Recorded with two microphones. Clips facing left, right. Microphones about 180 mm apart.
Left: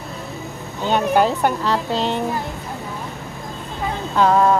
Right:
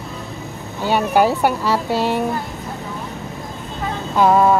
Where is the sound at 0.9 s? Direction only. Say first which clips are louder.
Right 1 dB; 10° right (ahead or behind).